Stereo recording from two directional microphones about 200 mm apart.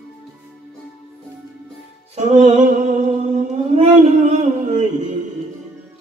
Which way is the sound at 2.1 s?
35° right (ahead or behind).